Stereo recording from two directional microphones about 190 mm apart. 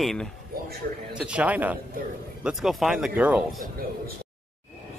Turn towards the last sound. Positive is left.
turn(degrees=-5)  # may be behind; listen again after turning